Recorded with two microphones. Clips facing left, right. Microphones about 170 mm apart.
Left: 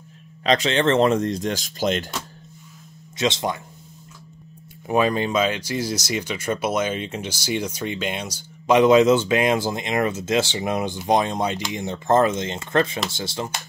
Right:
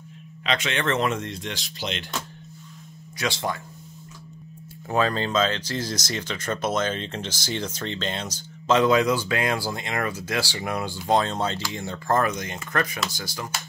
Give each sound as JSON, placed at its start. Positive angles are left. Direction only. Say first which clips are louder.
{"t": 0.4, "sound": "speech", "louder": "left 7 dB", "side_deg": 35}
{"t": 3.2, "sound": "speech", "louder": "left 4 dB", "side_deg": 20}
{"t": 4.8, "sound": "speech", "louder": "left 4 dB", "side_deg": 15}